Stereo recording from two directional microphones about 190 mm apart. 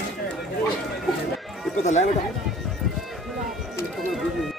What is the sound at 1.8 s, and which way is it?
Speech, 40° left (ahead or behind).